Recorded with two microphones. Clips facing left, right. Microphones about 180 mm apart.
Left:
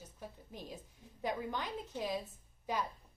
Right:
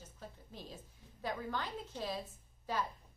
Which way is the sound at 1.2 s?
15° left (ahead or behind).